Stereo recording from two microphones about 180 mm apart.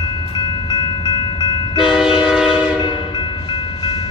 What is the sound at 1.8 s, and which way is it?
Train, 5° right (ahead or behind).